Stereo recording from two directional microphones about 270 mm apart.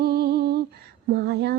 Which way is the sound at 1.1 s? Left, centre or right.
Right.